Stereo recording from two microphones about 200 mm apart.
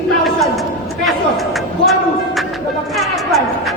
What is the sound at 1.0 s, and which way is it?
A man's voice, centre (ahead or behind).